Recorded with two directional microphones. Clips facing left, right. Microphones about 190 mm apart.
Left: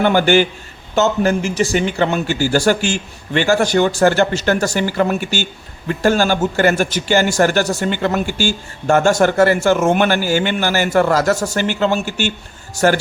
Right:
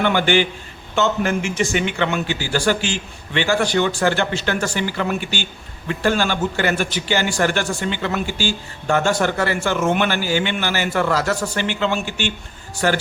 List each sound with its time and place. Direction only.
0.0 s a man's voice: 40° left (ahead or behind)